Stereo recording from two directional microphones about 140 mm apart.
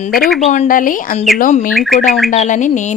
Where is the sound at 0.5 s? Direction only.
65° left (ahead or behind).